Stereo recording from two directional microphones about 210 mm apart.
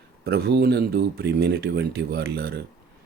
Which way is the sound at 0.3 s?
50° right (ahead or behind).